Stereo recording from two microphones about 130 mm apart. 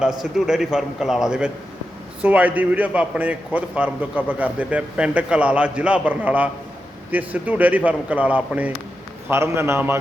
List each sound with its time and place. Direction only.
0.0 s a man's voice: 5° right (ahead or behind); by 10.0 s 20° right (ahead or behind)